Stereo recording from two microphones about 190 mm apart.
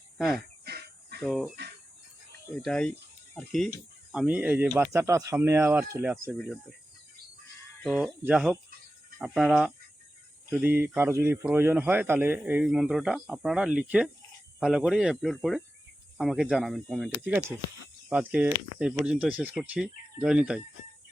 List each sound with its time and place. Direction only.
0.2 s speech: centre (ahead or behind)
0.6 s fowl: 55° right (ahead or behind)
1.2 s speech: centre (ahead or behind)
2.6 s speech: 5° left (ahead or behind)
7.9 s speech: 5° right (ahead or behind)